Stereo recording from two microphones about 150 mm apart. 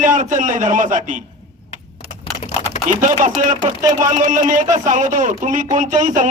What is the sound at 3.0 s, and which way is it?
A man's voice, 55° right (ahead or behind).